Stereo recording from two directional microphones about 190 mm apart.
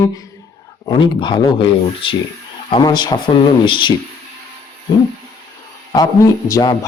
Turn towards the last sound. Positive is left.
turn(degrees=20)  # may be behind; listen again after turning